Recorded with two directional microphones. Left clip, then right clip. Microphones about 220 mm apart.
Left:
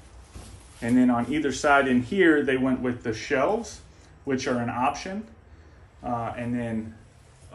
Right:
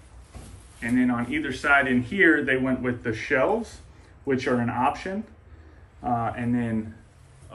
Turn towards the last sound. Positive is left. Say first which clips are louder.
# right 3 dB
turn(degrees=0)  # may be behind; listen again after turning